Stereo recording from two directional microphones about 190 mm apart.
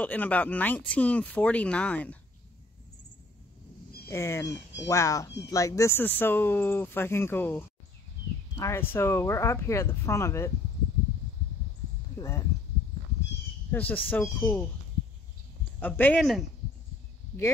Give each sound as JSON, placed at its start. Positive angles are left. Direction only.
{"t": 0.0, "sound": "speech", "side_deg": 10}
{"t": 4.1, "sound": "speech", "side_deg": 15}
{"t": 12.2, "sound": "speech", "side_deg": 15}
{"t": 13.7, "sound": "speech", "side_deg": 10}
{"t": 15.8, "sound": "speech", "side_deg": 10}